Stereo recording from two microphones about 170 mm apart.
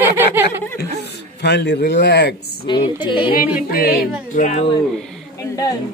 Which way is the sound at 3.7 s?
60° left (ahead or behind).